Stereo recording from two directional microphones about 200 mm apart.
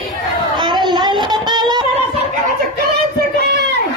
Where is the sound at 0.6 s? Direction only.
20° right (ahead or behind).